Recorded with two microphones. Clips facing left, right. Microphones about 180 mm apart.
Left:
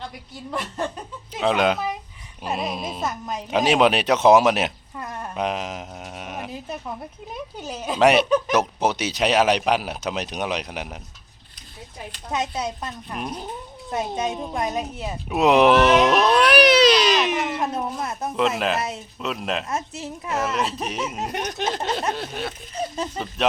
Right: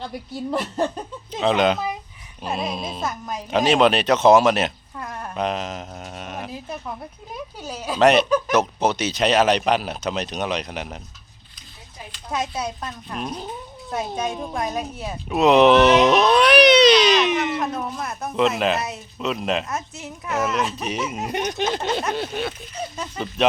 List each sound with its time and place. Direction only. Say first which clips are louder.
1.4 s speech: right 1 dB; 5° left (ahead or behind)
7.5 s a woman's voice: left 1 dB; 20° left (ahead or behind)
7.9 s speech: right 1 dB; 10° left (ahead or behind)
12.5 s a woman's voice: even; 20° left (ahead or behind)
16.1 s music: right 2 dB; 5° left (ahead or behind)
18.0 s a woman's voice: left 1 dB; 25° left (ahead or behind)
18.3 s speech: right 3 dB; 5° left (ahead or behind)
18.8 s a woman's voice: left 1 dB; 25° left (ahead or behind)
19.2 s speech: right 3 dB; 5° left (ahead or behind)
19.6 s a woman's voice: left 2 dB; 30° left (ahead or behind)
20.8 s speech: right 1 dB; centre (ahead or behind)